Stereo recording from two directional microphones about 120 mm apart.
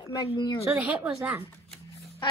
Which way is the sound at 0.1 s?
40° left (ahead or behind).